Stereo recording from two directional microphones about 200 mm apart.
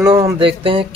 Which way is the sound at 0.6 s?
25° right (ahead or behind).